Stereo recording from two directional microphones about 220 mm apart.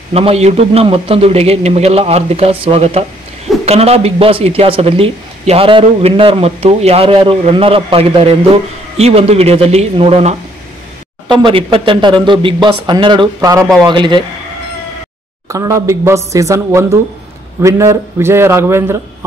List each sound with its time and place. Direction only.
0.1 s speech: 25° right (ahead or behind)
15.4 s speech: 15° right (ahead or behind)